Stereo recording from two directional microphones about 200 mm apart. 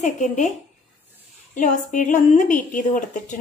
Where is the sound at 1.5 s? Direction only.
40° left (ahead or behind).